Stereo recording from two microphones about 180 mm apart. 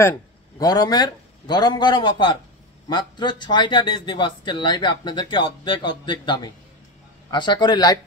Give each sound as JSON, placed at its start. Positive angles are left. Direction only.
{"t": 0.6, "sound": "speech", "side_deg": 20}